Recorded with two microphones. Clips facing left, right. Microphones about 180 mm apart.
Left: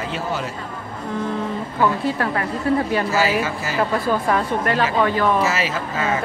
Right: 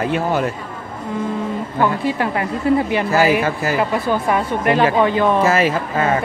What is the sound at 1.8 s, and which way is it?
Speech, 15° right (ahead or behind).